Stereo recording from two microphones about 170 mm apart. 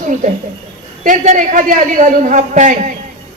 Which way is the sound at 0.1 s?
45° right (ahead or behind).